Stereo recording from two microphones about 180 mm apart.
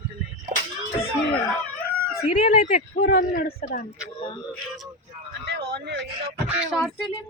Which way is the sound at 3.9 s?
25° left (ahead or behind).